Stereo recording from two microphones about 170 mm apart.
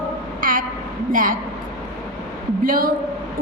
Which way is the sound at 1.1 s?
50° right (ahead or behind).